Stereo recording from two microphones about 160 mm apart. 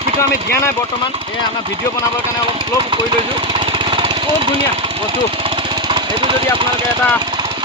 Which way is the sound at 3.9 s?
30° right (ahead or behind).